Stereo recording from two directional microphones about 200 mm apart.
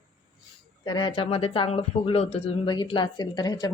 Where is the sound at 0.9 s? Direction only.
20° left (ahead or behind).